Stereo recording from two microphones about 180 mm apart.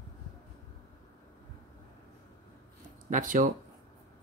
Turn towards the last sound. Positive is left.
turn(degrees=-45)  # may be behind; listen again after turning